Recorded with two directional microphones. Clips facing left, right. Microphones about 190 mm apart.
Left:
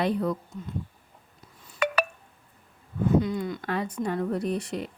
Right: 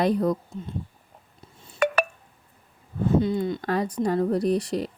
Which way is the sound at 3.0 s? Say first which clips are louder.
Right 2 dB; 30° right (ahead or behind).